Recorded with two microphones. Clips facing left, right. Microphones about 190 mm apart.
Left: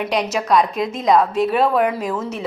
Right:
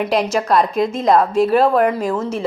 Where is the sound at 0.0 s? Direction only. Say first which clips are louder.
Right 3 dB; centre (ahead or behind).